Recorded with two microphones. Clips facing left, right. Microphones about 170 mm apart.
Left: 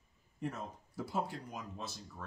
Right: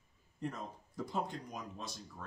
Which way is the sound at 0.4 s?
5° left (ahead or behind).